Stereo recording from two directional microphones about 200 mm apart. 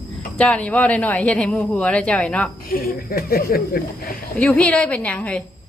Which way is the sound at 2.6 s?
45° left (ahead or behind).